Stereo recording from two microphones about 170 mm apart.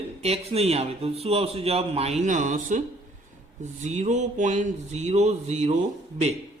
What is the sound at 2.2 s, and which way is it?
A man's voice, 45° right (ahead or behind).